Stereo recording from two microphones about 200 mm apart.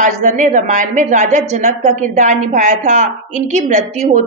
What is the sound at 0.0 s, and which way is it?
A woman's voice, 40° right (ahead or behind).